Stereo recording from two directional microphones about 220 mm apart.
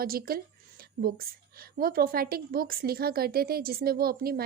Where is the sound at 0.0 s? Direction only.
40° right (ahead or behind).